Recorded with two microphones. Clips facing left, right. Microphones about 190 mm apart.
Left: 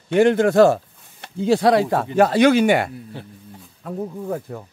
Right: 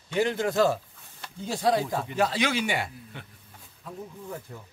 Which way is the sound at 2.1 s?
55° left (ahead or behind).